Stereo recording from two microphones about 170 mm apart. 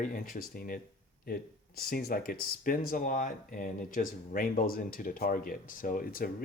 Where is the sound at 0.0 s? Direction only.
55° left (ahead or behind).